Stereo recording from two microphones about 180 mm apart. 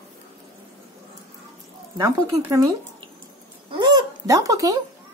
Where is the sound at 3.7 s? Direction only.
25° right (ahead or behind).